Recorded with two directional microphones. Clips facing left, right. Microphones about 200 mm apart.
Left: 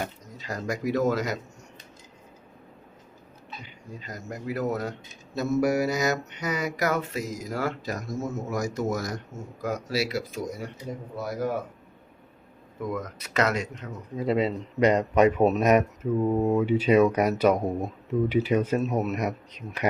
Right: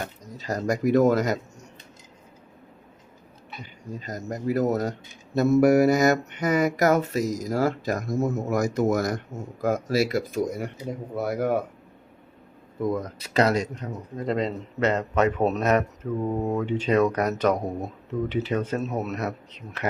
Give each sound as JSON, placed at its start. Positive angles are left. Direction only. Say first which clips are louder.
{"t": 0.3, "sound": "mantra", "louder": "right 5 dB", "side_deg": -40}
{"t": 4.0, "sound": "speech", "louder": "right 6 dB", "side_deg": -45}
{"t": 5.3, "sound": "mantra", "louder": "right 6 dB", "side_deg": -60}
{"t": 7.9, "sound": "speech", "louder": "right 6 dB", "side_deg": -55}
{"t": 9.6, "sound": "mantra", "louder": "right 5 dB", "side_deg": -50}
{"t": 11.2, "sound": "speech", "louder": "right 4 dB", "side_deg": -60}
{"t": 12.8, "sound": "speech", "louder": "right 5 dB", "side_deg": -30}
{"t": 14.2, "sound": "a man's voice", "louder": "left 2 dB", "side_deg": 5}